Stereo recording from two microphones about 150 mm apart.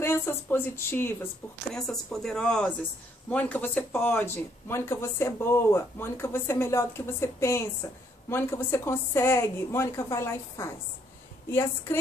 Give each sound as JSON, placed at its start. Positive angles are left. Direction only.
{"t": 0.0, "sound": "speech", "side_deg": 15}
{"t": 1.7, "sound": "a woman's voice", "side_deg": 0}